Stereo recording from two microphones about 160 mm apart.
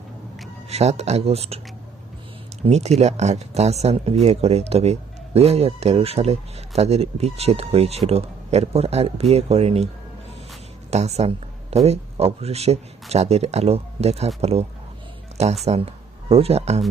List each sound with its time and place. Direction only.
0.7 s speech: 40° right (ahead or behind)
2.6 s speech: 45° right (ahead or behind)
10.9 s speech: 45° right (ahead or behind)
15.6 s speech: 40° right (ahead or behind)